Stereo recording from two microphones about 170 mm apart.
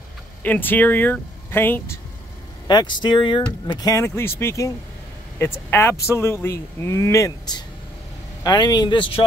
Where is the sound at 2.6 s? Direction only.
25° left (ahead or behind).